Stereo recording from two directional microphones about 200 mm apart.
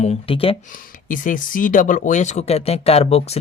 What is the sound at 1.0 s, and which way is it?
Speech, 40° left (ahead or behind).